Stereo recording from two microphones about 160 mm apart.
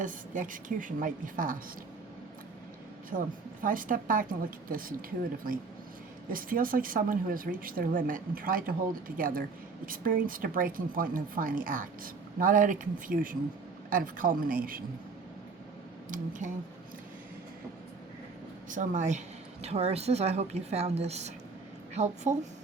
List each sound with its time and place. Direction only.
0.0 s speech: 55° right (ahead or behind)
3.1 s speech: 55° right (ahead or behind)
6.3 s speech: 60° right (ahead or behind)
16.0 s speech: 55° right (ahead or behind)
18.7 s a woman's voice: 50° right (ahead or behind)